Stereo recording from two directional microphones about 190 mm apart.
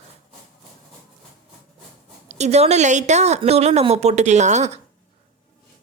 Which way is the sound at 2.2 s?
35° right (ahead or behind).